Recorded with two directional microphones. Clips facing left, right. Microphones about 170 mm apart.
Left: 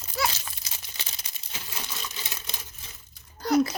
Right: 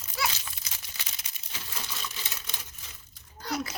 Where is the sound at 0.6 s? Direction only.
30° left (ahead or behind).